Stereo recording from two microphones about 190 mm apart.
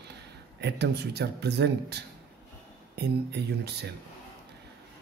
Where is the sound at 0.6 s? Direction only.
60° right (ahead or behind).